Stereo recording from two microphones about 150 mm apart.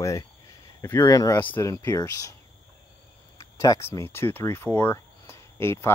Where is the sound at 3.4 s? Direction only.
25° left (ahead or behind).